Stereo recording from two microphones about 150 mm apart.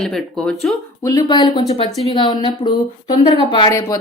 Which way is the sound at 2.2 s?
30° left (ahead or behind).